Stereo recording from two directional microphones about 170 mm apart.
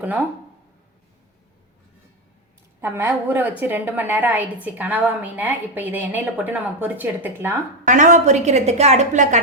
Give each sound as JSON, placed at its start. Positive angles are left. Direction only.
{"t": 0.0, "sound": "a woman's voice", "side_deg": -10}
{"t": 2.8, "sound": "a woman's voice", "side_deg": -15}
{"t": 7.9, "sound": "a woman's voice", "side_deg": -45}